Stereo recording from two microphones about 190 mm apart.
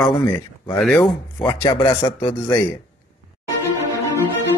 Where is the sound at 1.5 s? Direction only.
25° left (ahead or behind).